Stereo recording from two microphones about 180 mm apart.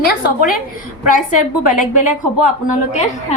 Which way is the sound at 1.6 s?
45° left (ahead or behind).